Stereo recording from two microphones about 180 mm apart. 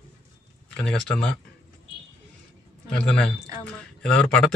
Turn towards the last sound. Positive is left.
turn(degrees=5)  # may be behind; listen again after turning